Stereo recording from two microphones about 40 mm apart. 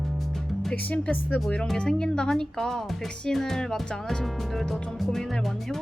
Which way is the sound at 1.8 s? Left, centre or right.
Left.